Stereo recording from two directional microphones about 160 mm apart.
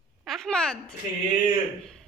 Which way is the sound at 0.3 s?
5° left (ahead or behind).